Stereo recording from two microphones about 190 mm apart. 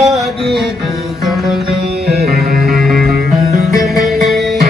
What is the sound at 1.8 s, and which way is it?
Music, 60° right (ahead or behind).